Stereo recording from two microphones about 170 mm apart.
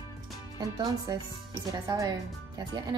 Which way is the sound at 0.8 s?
20° right (ahead or behind).